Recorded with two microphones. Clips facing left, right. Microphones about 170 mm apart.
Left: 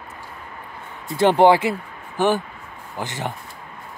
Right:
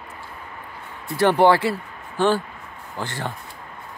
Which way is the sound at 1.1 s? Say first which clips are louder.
Left 2 dB; 20° left (ahead or behind).